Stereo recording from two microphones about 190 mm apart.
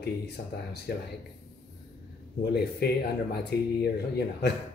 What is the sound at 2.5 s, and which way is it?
Speech, 60° left (ahead or behind).